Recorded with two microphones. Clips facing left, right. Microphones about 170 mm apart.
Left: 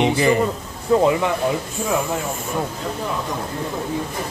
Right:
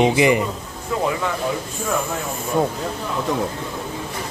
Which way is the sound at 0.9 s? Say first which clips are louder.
Left 7 dB; 35° left (ahead or behind).